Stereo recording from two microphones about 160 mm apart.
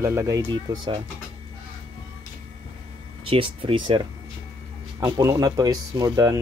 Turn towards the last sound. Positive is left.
turn(degrees=-20)  # may be behind; listen again after turning